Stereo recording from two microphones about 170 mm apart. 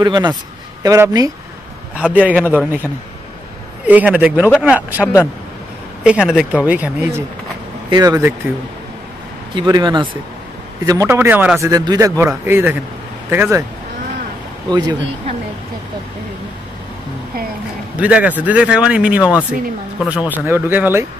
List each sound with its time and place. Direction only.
0.0 s speech: 25° right (ahead or behind)
2.0 s a man's voice: 5° right (ahead or behind)
3.8 s a man's voice: 10° right (ahead or behind)
7.9 s speech: 25° right (ahead or behind)
9.6 s a man's voice: 25° right (ahead or behind); by 11.7 s 10° right (ahead or behind)
11.7 s a man's voice: 20° right (ahead or behind)
14.7 s speech: 25° right (ahead or behind)
17.9 s a man's voice: 10° right (ahead or behind)